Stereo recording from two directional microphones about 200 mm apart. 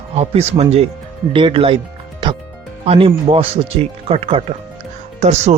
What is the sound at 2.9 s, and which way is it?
Speech, 25° right (ahead or behind).